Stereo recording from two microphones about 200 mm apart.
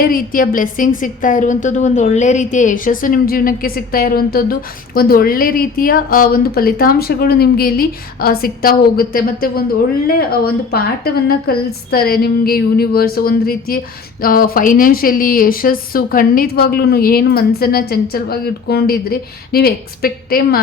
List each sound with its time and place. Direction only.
0.0 s a woman's voice: 45° left (ahead or behind)